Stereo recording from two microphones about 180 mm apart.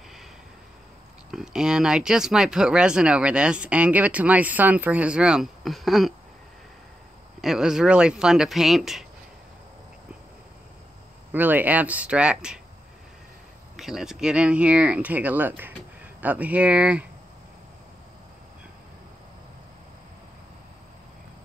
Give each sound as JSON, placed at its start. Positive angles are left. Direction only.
{"t": 1.3, "sound": "speech", "side_deg": -5}
{"t": 7.4, "sound": "speech", "side_deg": -5}
{"t": 11.3, "sound": "speech", "side_deg": -10}
{"t": 13.7, "sound": "speech", "side_deg": 0}